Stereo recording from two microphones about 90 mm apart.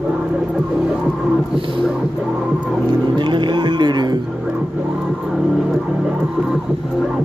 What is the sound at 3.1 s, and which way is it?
Music, 60° right (ahead or behind).